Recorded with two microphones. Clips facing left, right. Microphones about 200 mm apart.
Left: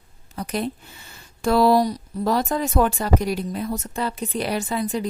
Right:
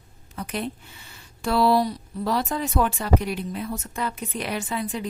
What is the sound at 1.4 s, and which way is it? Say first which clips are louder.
A woman's voice: left 3 dB; 45° left (ahead or behind).